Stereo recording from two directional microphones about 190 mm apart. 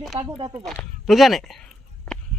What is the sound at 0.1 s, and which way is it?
Speech, 30° right (ahead or behind).